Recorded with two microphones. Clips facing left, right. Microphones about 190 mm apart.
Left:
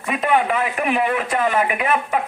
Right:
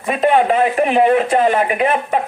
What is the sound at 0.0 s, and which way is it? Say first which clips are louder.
Speech: right 5 dB; 30° right (ahead or behind).